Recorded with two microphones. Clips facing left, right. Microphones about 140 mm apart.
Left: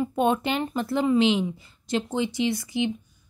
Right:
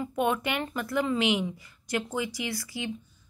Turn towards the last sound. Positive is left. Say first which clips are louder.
# left 8 dB
turn(degrees=20)  # may be behind; listen again after turning